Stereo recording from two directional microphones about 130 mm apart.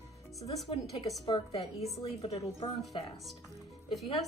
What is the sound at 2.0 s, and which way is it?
Speech, 50° left (ahead or behind).